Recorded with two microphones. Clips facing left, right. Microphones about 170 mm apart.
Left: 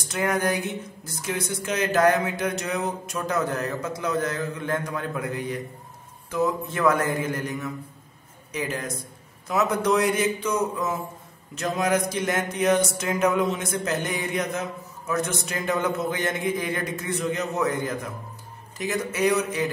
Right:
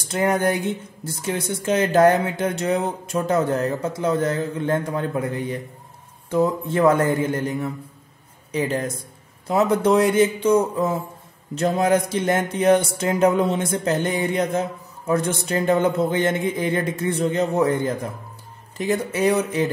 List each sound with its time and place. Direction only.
0.0 s speech: 30° right (ahead or behind)